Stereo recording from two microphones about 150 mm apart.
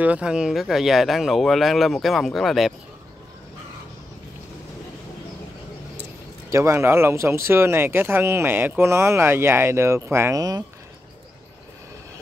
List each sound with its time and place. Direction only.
0.0 s speech: 10° right (ahead or behind)
6.5 s speech: 20° right (ahead or behind)